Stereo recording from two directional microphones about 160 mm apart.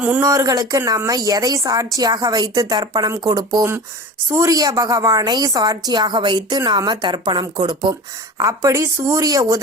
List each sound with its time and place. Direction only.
0.2 s a woman's voice: 20° right (ahead or behind)